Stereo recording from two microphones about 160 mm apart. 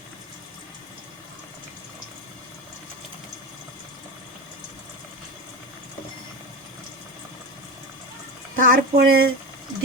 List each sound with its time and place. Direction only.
8.5 s speech: 70° right (ahead or behind)